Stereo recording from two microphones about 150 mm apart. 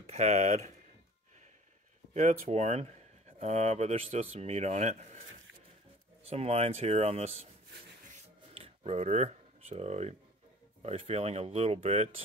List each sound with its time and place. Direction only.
0.0 s speech: 50° right (ahead or behind)
2.1 s speech: 45° right (ahead or behind)
6.2 s speech: 45° right (ahead or behind)
8.5 s a sound: 40° right (ahead or behind)
10.8 s speech: 40° right (ahead or behind)